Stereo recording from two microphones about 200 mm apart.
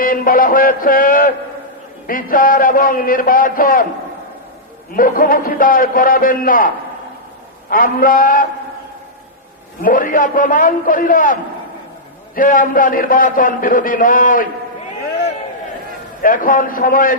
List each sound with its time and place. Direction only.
0.0 s a man's voice: 45° left (ahead or behind)
4.9 s a man's voice: 45° left (ahead or behind)
7.7 s a man's voice: 45° left (ahead or behind)
9.8 s a man's voice: 45° left (ahead or behind)
16.2 s a man's voice: 45° left (ahead or behind)